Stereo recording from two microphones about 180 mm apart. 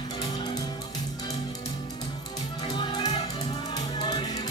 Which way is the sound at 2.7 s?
25° left (ahead or behind).